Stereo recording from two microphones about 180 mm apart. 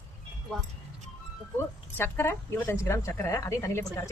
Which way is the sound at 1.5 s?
10° left (ahead or behind).